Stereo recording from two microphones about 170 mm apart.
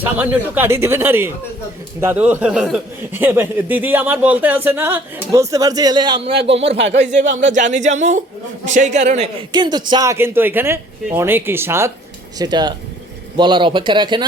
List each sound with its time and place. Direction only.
0.0 s a man's voice: 10° right (ahead or behind); by 9.3 s 40° right (ahead or behind)
9.5 s a man's voice: 25° right (ahead or behind)
12.4 s speech: 25° right (ahead or behind)